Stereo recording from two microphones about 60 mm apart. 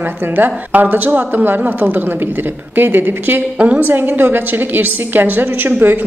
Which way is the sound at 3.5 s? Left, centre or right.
Right.